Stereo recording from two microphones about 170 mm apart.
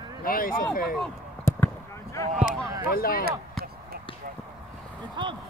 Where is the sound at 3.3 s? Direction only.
65° right (ahead or behind).